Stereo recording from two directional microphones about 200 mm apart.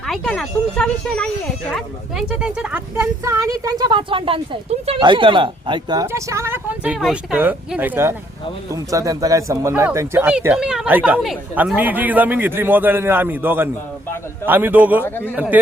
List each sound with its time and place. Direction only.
0.0 s speech: centre (ahead or behind)
3.2 s speech: 15° right (ahead or behind)
15.0 s a man's voice: 10° left (ahead or behind)